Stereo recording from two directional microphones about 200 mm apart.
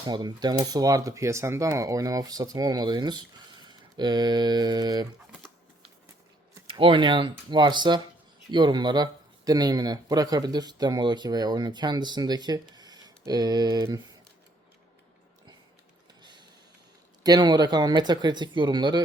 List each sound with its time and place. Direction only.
0.0 s speech: 20° right (ahead or behind)
6.7 s speech: 25° right (ahead or behind)
16.2 s printer: 20° right (ahead or behind)
17.2 s speech: 20° right (ahead or behind)